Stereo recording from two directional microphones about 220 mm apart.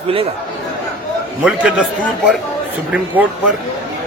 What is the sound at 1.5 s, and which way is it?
A man's voice, 5° right (ahead or behind).